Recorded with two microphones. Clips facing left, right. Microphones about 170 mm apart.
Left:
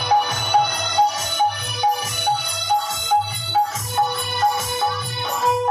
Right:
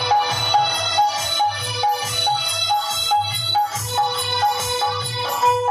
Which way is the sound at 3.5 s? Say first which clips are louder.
Left 1 dB; 25° right (ahead or behind).